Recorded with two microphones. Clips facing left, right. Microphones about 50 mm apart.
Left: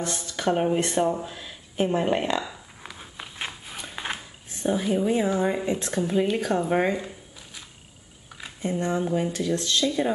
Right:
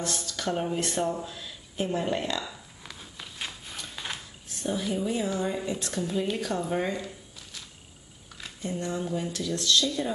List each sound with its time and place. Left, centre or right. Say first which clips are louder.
0.0 s speech: left 5 dB; left
3.0 s a sound: left 4 dB; left
6.3 s speech: left 6 dB; left
8.6 s speech: left 6 dB; left